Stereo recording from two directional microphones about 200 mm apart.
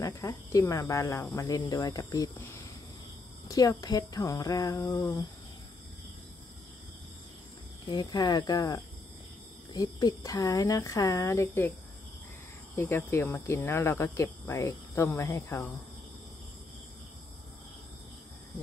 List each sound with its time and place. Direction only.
0.0 s speech: 15° left (ahead or behind)
3.4 s speech: 20° left (ahead or behind)
7.9 s speech: 20° left (ahead or behind)
12.7 s speech: 10° left (ahead or behind)